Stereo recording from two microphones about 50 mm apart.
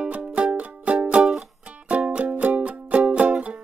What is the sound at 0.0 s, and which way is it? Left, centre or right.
Music, right.